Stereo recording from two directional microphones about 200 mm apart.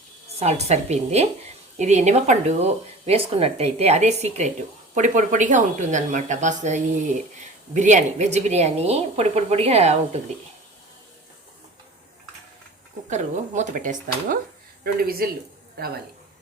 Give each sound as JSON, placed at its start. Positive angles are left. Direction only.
{"t": 0.3, "sound": "speech", "side_deg": -30}
{"t": 13.1, "sound": "speech", "side_deg": -35}